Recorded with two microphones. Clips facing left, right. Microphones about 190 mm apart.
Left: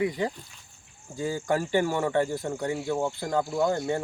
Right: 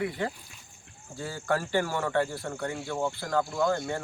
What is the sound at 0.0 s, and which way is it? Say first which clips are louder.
Speech: left 4 dB; 15° left (ahead or behind).